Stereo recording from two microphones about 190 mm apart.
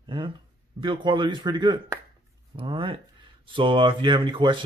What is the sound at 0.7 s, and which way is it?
Speech, 25° right (ahead or behind).